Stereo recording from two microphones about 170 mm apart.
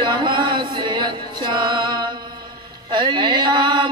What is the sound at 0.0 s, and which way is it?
Chant, 25° right (ahead or behind).